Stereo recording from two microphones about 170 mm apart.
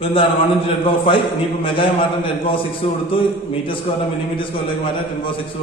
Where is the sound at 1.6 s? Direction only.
30° left (ahead or behind).